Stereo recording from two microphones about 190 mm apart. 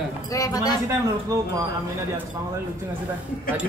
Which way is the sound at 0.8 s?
15° right (ahead or behind).